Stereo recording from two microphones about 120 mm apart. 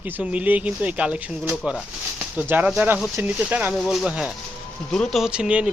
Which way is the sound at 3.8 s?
Centre (ahead or behind).